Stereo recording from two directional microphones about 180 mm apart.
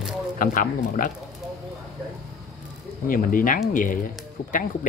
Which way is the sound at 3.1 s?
50° left (ahead or behind).